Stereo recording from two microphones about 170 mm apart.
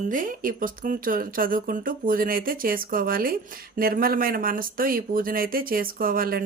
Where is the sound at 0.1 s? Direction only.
50° right (ahead or behind).